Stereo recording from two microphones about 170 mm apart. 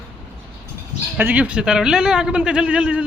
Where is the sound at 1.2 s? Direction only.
10° right (ahead or behind).